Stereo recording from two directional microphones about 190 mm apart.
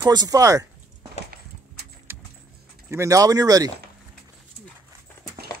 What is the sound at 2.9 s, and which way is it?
Speech, 15° right (ahead or behind).